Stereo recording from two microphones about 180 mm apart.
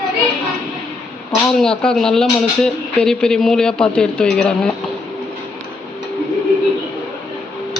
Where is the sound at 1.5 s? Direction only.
5° left (ahead or behind).